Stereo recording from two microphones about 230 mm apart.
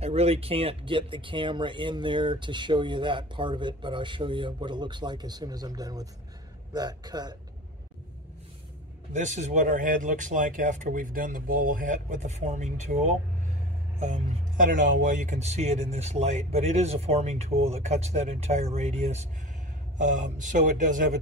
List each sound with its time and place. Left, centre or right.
0.0 s speech: right
9.1 s speech: right